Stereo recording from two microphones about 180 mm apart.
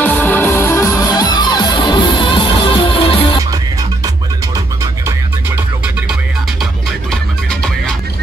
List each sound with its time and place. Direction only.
0.0 s music: 10° left (ahead or behind); by 3.3 s 30° left (ahead or behind)